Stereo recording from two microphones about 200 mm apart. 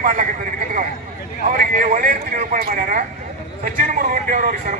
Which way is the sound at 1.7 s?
45° right (ahead or behind).